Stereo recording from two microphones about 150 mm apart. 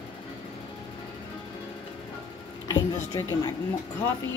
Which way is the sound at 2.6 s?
20° left (ahead or behind).